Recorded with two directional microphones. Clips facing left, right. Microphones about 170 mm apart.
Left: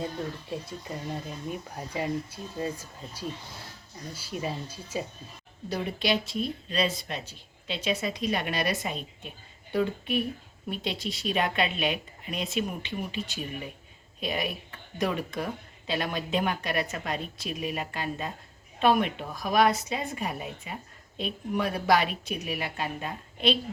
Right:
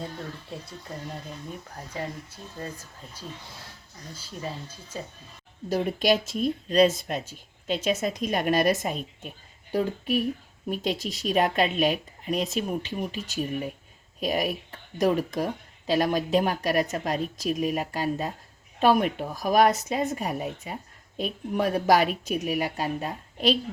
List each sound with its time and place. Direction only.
1.5 s speech: 15° left (ahead or behind)
5.6 s speech: 45° right (ahead or behind)